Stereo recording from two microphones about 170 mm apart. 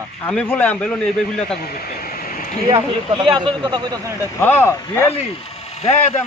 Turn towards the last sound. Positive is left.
turn(degrees=40)  # may be behind; listen again after turning